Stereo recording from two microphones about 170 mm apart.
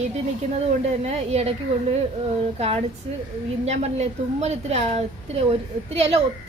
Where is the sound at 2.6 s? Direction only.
35° right (ahead or behind).